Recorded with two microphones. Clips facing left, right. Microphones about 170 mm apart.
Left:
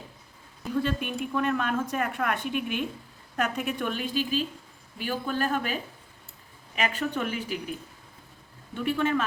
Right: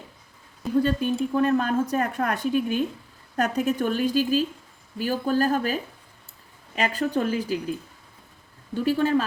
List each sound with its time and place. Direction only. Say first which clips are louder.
0.8 s speech: right 6 dB; 35° right (ahead or behind)
8.7 s speech: right 5 dB; 35° right (ahead or behind)